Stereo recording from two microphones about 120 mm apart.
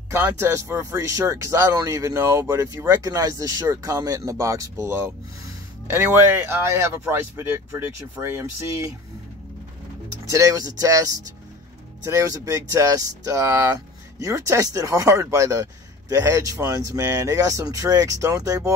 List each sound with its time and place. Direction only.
0.1 s speech: 20° right (ahead or behind)
10.3 s speech: 30° right (ahead or behind)